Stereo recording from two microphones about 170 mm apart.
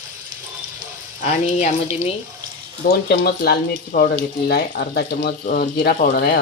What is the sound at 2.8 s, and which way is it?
Speech, 65° left (ahead or behind).